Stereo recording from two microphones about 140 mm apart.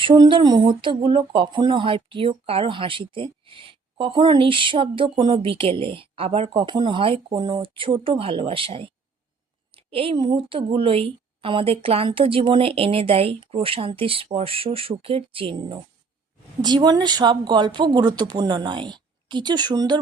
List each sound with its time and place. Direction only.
0.0 s speech: 35° right (ahead or behind)